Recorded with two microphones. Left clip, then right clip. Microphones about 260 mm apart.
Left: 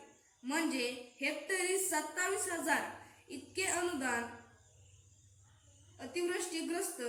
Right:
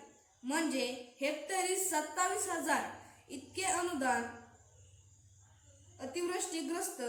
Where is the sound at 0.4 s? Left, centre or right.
Centre.